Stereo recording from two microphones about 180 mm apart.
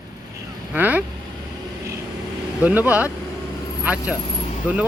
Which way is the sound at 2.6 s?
10° right (ahead or behind).